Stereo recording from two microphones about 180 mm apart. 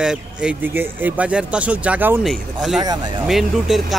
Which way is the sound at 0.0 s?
5° right (ahead or behind).